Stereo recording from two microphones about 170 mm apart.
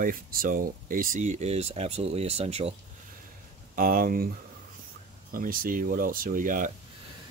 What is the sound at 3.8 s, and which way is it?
Speech, 55° right (ahead or behind).